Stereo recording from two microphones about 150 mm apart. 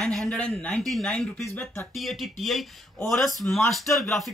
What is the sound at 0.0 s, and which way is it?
Speech, 5° left (ahead or behind).